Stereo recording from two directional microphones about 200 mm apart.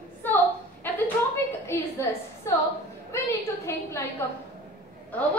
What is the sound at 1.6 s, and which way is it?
Speech, 10° left (ahead or behind).